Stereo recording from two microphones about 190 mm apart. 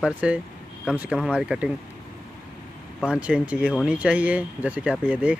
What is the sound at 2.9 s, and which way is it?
Speech, 5° right (ahead or behind).